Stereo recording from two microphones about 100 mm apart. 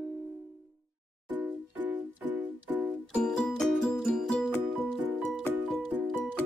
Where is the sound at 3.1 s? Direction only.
10° left (ahead or behind).